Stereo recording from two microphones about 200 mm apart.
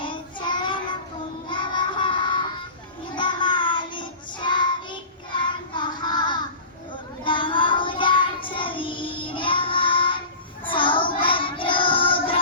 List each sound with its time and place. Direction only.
0.0 s child singing: 25° left (ahead or behind)